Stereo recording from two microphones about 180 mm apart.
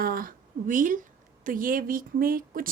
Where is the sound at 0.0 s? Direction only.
55° right (ahead or behind).